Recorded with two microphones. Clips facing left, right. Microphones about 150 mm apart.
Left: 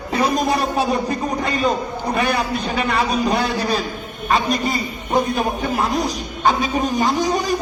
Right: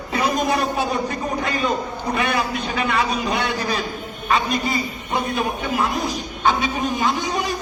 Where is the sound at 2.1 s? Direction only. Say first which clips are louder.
Left 2 dB; 35° left (ahead or behind).